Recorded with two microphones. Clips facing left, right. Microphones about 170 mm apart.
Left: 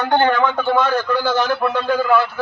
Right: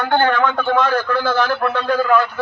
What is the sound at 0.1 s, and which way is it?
A man's voice, 15° left (ahead or behind).